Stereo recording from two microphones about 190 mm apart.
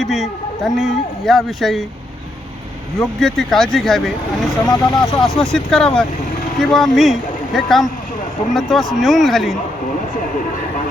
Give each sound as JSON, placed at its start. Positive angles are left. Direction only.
{"t": 0.0, "sound": "speech", "side_deg": 0}
{"t": 3.2, "sound": "speech", "side_deg": 0}
{"t": 4.6, "sound": "speech", "side_deg": 20}
{"t": 5.2, "sound": "speech", "side_deg": 0}